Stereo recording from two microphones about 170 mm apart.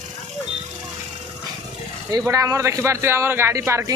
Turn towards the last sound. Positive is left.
turn(degrees=-15)  # may be behind; listen again after turning